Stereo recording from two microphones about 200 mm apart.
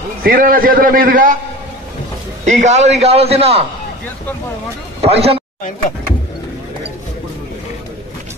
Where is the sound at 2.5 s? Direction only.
35° right (ahead or behind).